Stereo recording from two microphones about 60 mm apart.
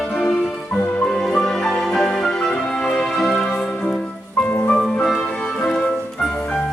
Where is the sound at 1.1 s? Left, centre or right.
Centre.